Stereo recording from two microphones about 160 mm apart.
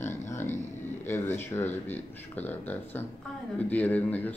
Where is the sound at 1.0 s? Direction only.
15° left (ahead or behind).